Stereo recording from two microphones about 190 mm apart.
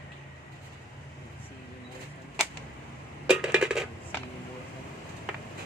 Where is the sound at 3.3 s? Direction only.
5° right (ahead or behind).